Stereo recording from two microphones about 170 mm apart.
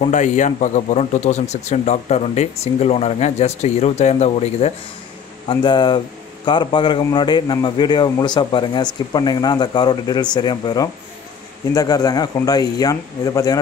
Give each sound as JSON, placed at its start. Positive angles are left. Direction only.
{"t": 0.0, "sound": "a man's voice", "side_deg": 45}
{"t": 5.5, "sound": "a man's voice", "side_deg": 25}